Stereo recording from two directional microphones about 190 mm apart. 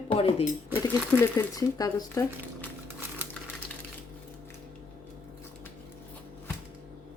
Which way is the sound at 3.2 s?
10° right (ahead or behind).